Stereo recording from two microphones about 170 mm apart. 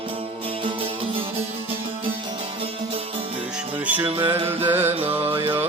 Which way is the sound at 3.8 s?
10° right (ahead or behind).